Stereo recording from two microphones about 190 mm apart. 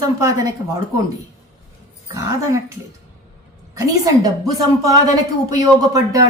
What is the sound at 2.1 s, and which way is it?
Speech, 15° right (ahead or behind).